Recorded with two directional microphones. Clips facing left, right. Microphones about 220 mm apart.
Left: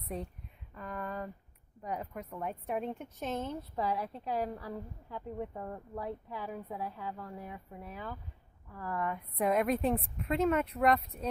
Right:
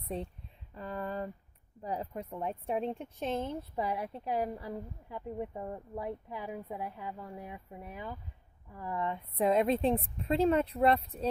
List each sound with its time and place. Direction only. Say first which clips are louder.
0.1 s a woman's voice: right 2 dB; 30° right (ahead or behind)
3.7 s a woman's voice: left 2 dB; 15° right (ahead or behind); by 11.2 s 30° right (ahead or behind)